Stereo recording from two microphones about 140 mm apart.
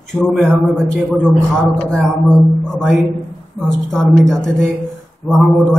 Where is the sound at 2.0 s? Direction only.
5° left (ahead or behind).